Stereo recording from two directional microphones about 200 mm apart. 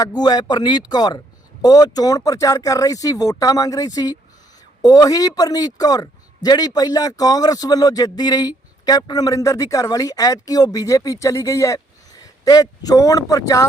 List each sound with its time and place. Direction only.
0.0 s a man's voice: 20° left (ahead or behind)